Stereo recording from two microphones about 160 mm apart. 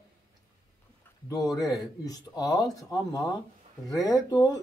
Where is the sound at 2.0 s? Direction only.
25° left (ahead or behind).